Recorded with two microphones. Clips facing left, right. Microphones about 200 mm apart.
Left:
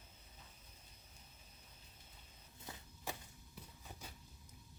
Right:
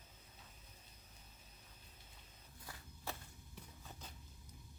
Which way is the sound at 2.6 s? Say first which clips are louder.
Left 2 dB; 20° left (ahead or behind).